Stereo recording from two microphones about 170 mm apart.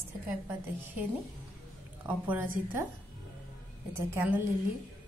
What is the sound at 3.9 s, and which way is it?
Speech, 15° right (ahead or behind).